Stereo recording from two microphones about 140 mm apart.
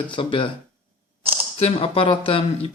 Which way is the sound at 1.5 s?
45° left (ahead or behind).